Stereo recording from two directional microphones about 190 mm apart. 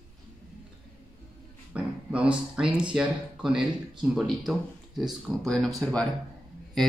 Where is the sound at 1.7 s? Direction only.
5° right (ahead or behind).